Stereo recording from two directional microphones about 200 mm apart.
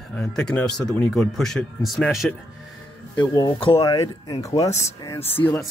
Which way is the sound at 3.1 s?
20° left (ahead or behind).